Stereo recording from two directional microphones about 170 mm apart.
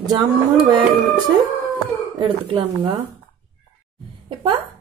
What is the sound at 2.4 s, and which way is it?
Speech, 35° right (ahead or behind).